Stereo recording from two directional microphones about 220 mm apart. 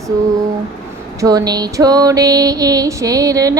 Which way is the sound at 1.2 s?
15° right (ahead or behind).